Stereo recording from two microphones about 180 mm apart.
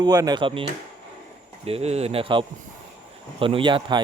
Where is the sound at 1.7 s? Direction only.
35° right (ahead or behind).